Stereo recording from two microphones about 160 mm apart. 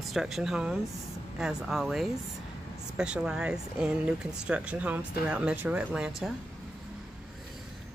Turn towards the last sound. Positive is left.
turn(degrees=-5)  # may be behind; listen again after turning